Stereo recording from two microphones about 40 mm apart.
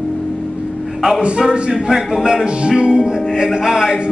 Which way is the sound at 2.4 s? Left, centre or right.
Right.